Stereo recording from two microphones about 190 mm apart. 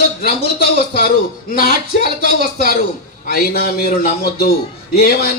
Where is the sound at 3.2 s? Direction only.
50° left (ahead or behind).